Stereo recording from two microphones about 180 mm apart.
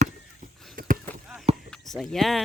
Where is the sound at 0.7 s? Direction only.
50° right (ahead or behind).